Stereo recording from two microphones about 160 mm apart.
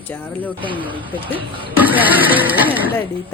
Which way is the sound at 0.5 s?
30° right (ahead or behind).